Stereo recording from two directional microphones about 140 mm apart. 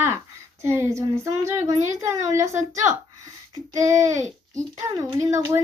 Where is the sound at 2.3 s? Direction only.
20° right (ahead or behind).